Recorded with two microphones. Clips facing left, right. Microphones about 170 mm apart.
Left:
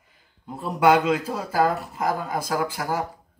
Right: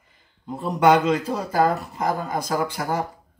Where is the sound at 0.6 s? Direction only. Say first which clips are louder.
Right 1 dB; 5° left (ahead or behind).